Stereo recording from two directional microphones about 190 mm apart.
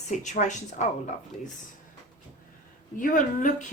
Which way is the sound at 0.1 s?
40° left (ahead or behind).